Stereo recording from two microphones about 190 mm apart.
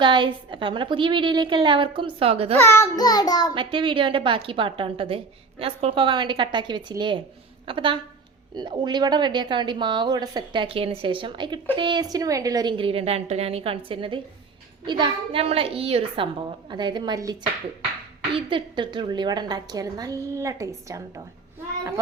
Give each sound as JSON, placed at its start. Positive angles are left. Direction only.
{"t": 0.0, "sound": "a woman's voice", "side_deg": -25}
{"t": 2.6, "sound": "child singing", "side_deg": 15}
{"t": 3.5, "sound": "a woman's voice", "side_deg": -25}